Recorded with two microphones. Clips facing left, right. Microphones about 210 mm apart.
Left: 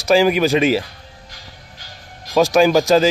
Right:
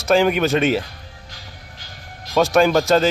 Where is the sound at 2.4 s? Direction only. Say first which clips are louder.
Left 2 dB; 5° left (ahead or behind).